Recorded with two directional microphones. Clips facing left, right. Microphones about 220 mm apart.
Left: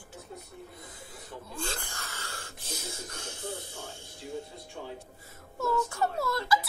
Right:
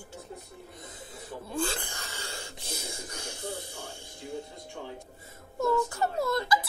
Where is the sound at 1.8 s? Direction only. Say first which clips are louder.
Right 2 dB; 15° right (ahead or behind).